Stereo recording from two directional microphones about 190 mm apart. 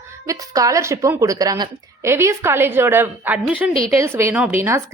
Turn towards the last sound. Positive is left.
turn(degrees=-15)  # may be behind; listen again after turning